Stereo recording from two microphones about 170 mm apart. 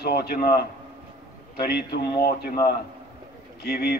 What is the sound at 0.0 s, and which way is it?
Speech, 70° left (ahead or behind).